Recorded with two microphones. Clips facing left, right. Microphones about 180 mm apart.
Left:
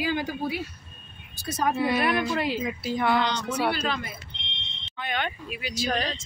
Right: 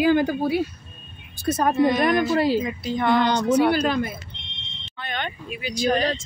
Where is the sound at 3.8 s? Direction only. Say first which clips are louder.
Right 8 dB; 50° right (ahead or behind).